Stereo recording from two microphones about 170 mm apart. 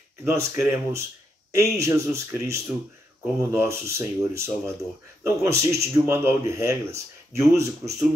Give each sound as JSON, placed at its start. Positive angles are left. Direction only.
{"t": 0.2, "sound": "speech", "side_deg": -15}